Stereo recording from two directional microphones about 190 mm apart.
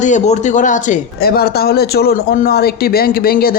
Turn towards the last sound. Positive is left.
turn(degrees=50)  # may be behind; listen again after turning